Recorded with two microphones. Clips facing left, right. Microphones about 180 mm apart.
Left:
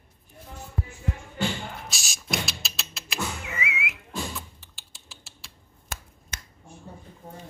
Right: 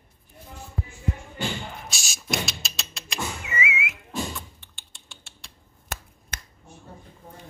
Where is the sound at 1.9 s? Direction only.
Centre (ahead or behind).